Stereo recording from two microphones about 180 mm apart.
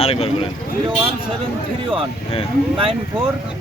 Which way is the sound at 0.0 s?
35° left (ahead or behind).